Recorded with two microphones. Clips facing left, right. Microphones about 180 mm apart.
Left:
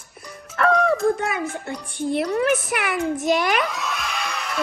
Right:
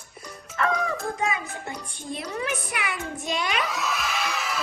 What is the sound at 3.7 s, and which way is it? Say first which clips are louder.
Music: even; centre (ahead or behind).